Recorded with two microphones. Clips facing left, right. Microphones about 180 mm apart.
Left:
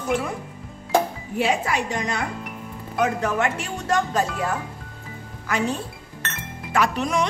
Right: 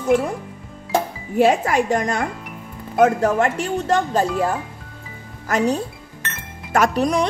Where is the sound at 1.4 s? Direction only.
50° right (ahead or behind); by 4.3 s 30° right (ahead or behind).